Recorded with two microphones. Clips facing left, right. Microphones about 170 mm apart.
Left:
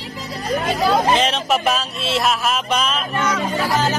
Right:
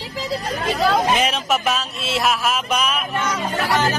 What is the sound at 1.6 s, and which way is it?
Speech, centre (ahead or behind).